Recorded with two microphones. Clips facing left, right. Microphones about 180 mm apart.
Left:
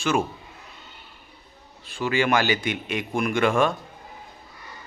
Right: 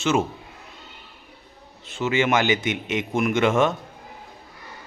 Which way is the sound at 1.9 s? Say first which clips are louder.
Right 1 dB; 20° right (ahead or behind).